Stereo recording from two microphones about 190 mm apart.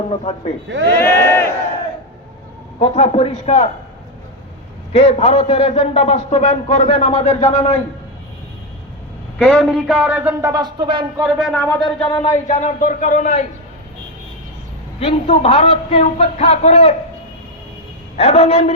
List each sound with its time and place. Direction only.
0.3 s a man's voice: 35° left (ahead or behind)
0.9 s speech: 10° left (ahead or behind)
2.7 s a man's voice: 35° left (ahead or behind)
4.9 s a man's voice: 35° left (ahead or behind)
9.4 s speech: 5° left (ahead or behind)
10.5 s speech: 20° right (ahead or behind)
11.2 s speech: centre (ahead or behind)
11.7 s a sound: 25° left (ahead or behind)
12.5 s a man's voice: 40° left (ahead or behind)
14.9 s a man's voice: 30° left (ahead or behind)
18.2 s a man's voice: 35° left (ahead or behind)